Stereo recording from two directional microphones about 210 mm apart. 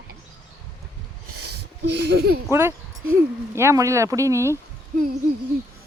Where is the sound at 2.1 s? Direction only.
50° right (ahead or behind).